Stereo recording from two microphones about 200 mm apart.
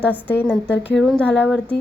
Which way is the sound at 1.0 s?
Centre (ahead or behind).